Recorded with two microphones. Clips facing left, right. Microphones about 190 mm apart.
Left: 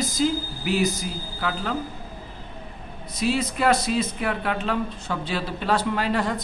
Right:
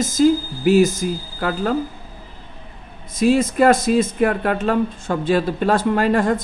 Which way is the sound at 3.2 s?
50° right (ahead or behind).